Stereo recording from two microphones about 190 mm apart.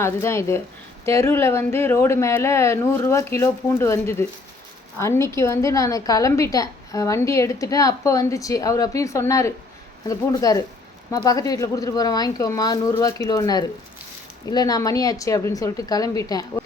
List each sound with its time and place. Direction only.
0.0 s a woman's voice: 15° left (ahead or behind)